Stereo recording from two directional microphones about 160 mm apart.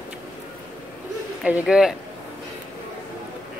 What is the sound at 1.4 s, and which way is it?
Speech, 5° right (ahead or behind).